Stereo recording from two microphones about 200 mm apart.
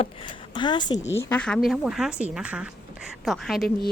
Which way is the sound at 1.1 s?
10° left (ahead or behind).